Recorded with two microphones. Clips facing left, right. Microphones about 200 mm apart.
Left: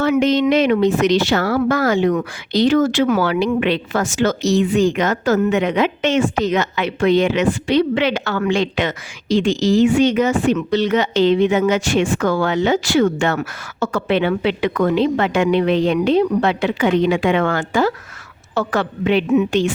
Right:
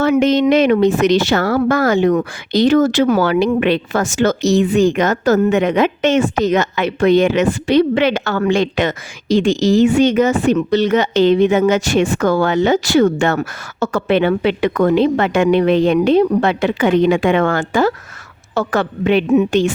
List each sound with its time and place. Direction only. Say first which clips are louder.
0.0 s a woman's voice: right 2 dB; 50° right (ahead or behind)